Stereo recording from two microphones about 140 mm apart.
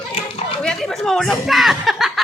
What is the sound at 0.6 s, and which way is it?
Speech, 5° left (ahead or behind).